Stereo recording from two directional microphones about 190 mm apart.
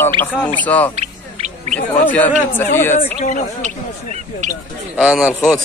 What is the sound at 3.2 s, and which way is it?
Speech, 40° left (ahead or behind).